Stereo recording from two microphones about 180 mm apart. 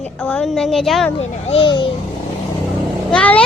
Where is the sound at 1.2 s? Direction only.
35° left (ahead or behind).